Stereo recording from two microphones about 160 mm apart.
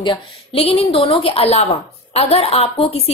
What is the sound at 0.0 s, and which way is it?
A woman's voice, 35° left (ahead or behind).